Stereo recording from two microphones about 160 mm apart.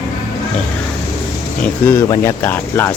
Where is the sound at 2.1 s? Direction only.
15° left (ahead or behind).